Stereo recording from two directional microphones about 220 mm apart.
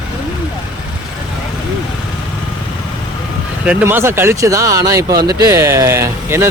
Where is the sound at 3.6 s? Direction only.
5° right (ahead or behind).